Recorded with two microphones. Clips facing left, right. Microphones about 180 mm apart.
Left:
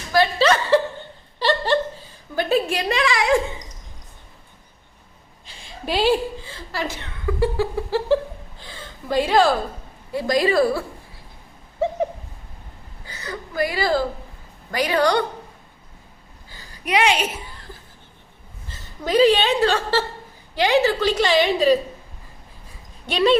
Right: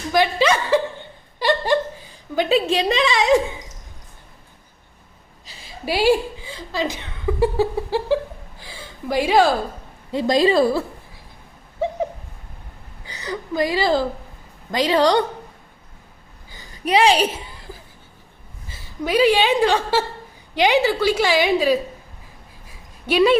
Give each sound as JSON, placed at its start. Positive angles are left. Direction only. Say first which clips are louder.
{"t": 0.1, "sound": "chuckle", "louder": "even", "side_deg": -15}
{"t": 5.5, "sound": "chuckle", "louder": "right 1 dB", "side_deg": -5}
{"t": 10.1, "sound": "a woman's voice", "louder": "right 3 dB", "side_deg": -25}
{"t": 13.1, "sound": "a sound", "louder": "right 5 dB", "side_deg": -15}
{"t": 14.7, "sound": "a woman's voice", "louder": "right 2 dB", "side_deg": -25}
{"t": 16.5, "sound": "a sound", "louder": "right 2 dB", "side_deg": -20}
{"t": 16.8, "sound": "a woman's voice", "louder": "right 4 dB", "side_deg": -30}
{"t": 18.7, "sound": "a woman's voice", "louder": "even", "side_deg": -10}
{"t": 23.0, "sound": "a woman's voice", "louder": "right 2 dB", "side_deg": -10}